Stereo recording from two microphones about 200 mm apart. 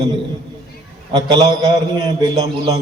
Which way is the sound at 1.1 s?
20° right (ahead or behind).